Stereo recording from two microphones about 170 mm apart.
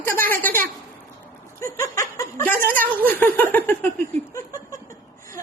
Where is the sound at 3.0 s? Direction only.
10° left (ahead or behind).